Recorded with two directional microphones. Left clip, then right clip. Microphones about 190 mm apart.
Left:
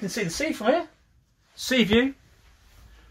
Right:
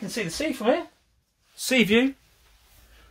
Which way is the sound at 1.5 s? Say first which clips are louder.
Right 1 dB; 25° right (ahead or behind).